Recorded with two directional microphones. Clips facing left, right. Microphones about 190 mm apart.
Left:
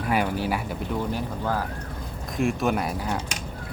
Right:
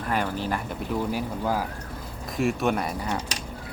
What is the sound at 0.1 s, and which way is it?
Speech, 10° left (ahead or behind).